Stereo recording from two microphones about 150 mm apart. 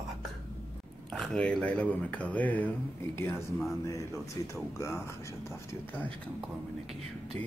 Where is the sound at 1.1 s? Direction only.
5° left (ahead or behind).